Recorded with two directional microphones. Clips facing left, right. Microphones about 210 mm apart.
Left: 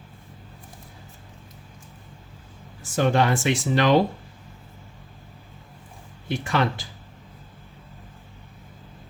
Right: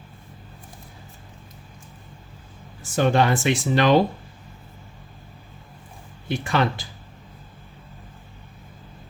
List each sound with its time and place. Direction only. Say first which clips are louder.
2.9 s speech: right 1 dB; 30° right (ahead or behind)
6.2 s speech: right 1 dB; 30° right (ahead or behind)